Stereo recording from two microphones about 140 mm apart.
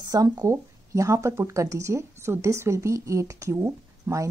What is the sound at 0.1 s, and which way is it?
Speech, 25° right (ahead or behind).